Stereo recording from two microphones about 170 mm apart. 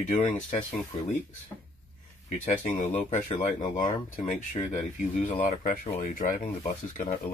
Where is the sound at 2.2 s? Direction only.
50° left (ahead or behind).